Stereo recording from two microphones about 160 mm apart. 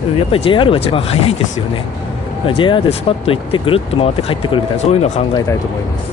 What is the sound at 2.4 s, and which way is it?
Speech, 30° left (ahead or behind).